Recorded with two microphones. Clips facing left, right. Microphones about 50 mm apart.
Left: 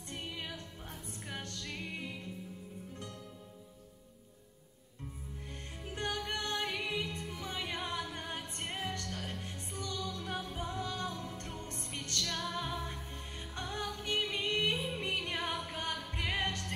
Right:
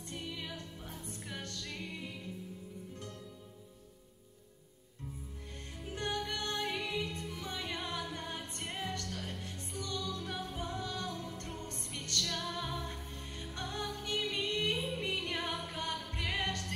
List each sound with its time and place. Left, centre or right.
0.1 s music: left
5.9 s music: left